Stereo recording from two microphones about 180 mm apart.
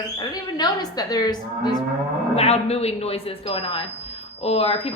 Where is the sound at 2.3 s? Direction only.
35° left (ahead or behind).